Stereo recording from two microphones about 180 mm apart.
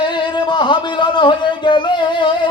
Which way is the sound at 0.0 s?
25° left (ahead or behind).